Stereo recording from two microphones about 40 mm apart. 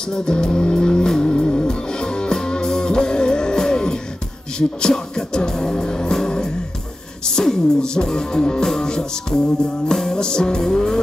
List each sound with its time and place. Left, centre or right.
0.1 s music: centre